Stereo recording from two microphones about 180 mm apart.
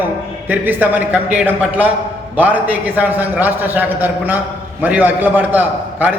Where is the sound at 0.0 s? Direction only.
10° right (ahead or behind).